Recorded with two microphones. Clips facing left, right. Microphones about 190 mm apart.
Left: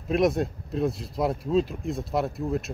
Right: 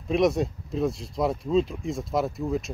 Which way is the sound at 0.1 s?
Centre (ahead or behind).